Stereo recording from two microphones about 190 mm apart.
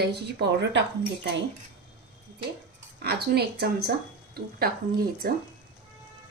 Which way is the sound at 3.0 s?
60° right (ahead or behind).